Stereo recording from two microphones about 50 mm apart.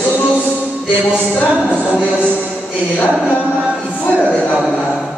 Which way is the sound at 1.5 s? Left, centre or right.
Right.